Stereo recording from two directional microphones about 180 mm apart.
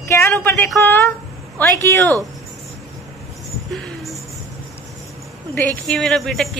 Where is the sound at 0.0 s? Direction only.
15° left (ahead or behind).